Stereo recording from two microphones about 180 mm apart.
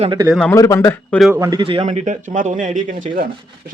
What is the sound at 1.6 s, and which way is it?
Speech, 30° right (ahead or behind).